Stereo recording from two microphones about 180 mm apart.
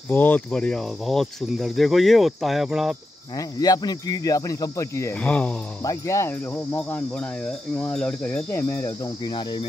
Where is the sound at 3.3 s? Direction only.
20° left (ahead or behind).